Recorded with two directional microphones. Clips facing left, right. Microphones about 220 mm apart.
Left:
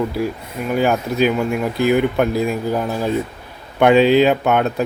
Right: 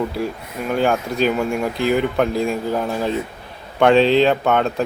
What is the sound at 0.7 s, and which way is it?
Speech, 5° left (ahead or behind).